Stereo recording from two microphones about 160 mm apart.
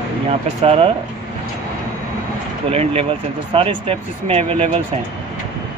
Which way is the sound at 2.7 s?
40° right (ahead or behind).